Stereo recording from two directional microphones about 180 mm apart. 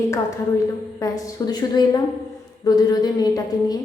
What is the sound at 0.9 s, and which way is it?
A woman's voice, 20° left (ahead or behind).